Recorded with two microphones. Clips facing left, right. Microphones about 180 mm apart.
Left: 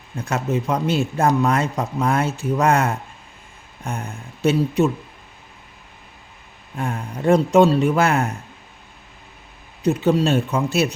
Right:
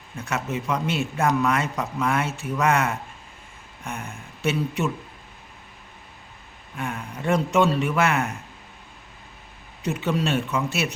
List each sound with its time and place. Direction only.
0.2 s a man's voice: 35° left (ahead or behind)
6.7 s a man's voice: 35° left (ahead or behind)
9.8 s a man's voice: 35° left (ahead or behind)